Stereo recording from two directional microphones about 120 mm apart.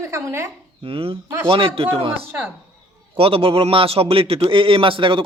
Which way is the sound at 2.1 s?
15° right (ahead or behind).